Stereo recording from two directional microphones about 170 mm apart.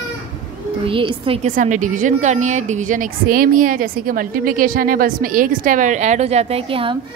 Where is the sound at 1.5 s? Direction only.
50° right (ahead or behind).